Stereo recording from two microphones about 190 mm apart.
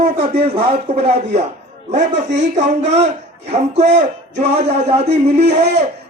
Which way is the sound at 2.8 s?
35° right (ahead or behind).